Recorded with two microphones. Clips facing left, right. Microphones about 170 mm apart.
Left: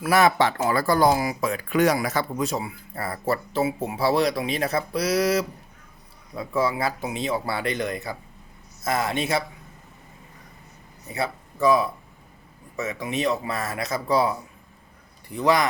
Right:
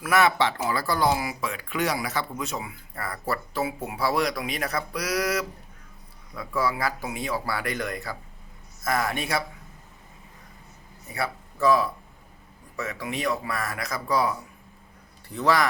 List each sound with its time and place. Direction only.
0.0 s speech: 35° left (ahead or behind)
11.1 s a man's voice: 20° left (ahead or behind)